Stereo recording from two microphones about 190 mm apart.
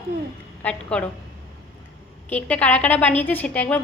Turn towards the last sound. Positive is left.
turn(degrees=10)  # may be behind; listen again after turning